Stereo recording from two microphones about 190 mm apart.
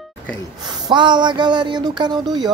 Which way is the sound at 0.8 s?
25° right (ahead or behind).